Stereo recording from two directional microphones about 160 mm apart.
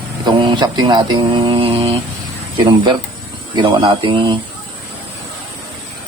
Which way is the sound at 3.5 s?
30° right (ahead or behind).